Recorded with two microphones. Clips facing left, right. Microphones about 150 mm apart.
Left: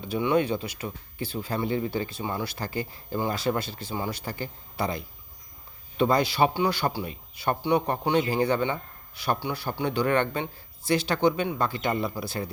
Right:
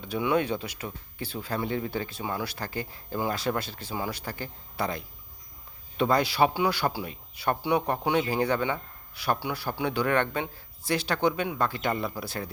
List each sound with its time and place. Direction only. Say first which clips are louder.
0.0 s speech: left 2 dB; centre (ahead or behind)